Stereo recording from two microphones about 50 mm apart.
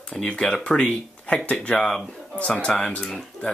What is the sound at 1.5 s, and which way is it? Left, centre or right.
Speech, left.